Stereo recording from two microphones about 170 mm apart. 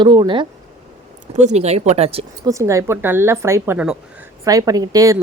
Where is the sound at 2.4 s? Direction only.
20° right (ahead or behind).